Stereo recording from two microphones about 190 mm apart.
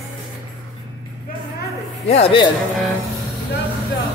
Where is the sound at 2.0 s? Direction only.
30° left (ahead or behind).